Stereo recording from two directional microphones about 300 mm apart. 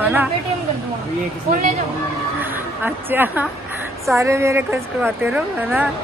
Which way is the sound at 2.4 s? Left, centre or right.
Centre.